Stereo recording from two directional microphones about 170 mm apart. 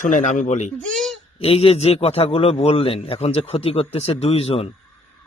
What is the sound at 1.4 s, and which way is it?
A man's voice, 35° left (ahead or behind).